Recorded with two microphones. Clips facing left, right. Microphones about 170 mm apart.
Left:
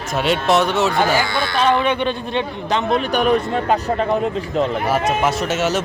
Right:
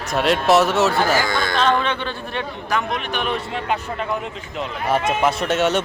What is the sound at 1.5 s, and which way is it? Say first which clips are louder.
A man's voice: left 4 dB; 10° left (ahead or behind).